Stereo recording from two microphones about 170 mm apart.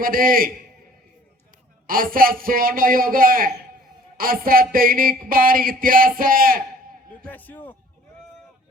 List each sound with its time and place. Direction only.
0.0 s speech: 55° right (ahead or behind)
1.9 s speech: 55° right (ahead or behind)
7.3 s a man's voice: 10° left (ahead or behind)